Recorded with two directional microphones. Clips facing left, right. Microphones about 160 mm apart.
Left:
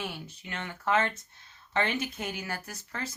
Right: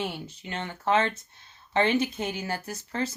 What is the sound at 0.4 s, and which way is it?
Speech, 30° right (ahead or behind).